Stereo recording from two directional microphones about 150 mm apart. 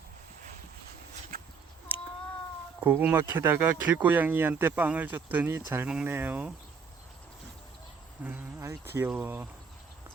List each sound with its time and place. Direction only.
1.3 s a sound: 75° right (ahead or behind)
2.8 s speech: 10° right (ahead or behind)
8.2 s speech: 15° right (ahead or behind)